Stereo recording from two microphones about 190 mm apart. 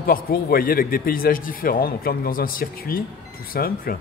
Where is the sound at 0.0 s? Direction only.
50° left (ahead or behind).